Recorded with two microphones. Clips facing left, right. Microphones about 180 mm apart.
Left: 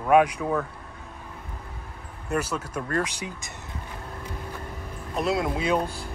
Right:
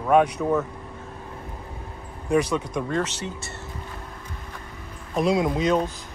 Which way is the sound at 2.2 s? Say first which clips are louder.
Right 6 dB; 5° left (ahead or behind).